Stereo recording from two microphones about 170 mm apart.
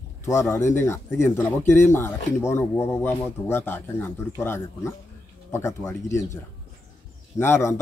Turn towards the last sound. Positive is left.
turn(degrees=15)  # may be behind; listen again after turning